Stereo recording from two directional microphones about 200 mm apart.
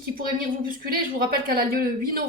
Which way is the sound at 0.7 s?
45° right (ahead or behind).